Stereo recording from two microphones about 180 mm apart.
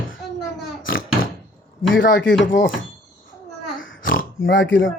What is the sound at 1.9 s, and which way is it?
Speech, 90° left.